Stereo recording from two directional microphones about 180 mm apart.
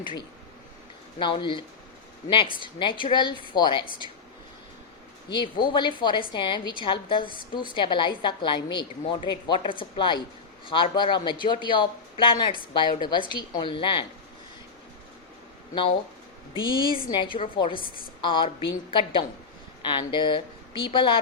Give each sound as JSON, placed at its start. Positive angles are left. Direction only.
{"t": 0.0, "sound": "a woman's voice", "side_deg": 25}
{"t": 5.3, "sound": "a woman's voice", "side_deg": 25}
{"t": 16.6, "sound": "a woman's voice", "side_deg": 25}